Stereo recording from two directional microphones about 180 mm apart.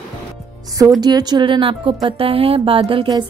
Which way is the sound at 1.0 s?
25° right (ahead or behind).